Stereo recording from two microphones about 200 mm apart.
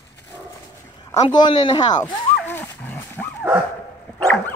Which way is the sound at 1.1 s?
20° left (ahead or behind).